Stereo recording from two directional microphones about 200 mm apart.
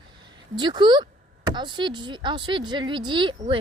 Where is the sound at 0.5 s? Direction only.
20° right (ahead or behind).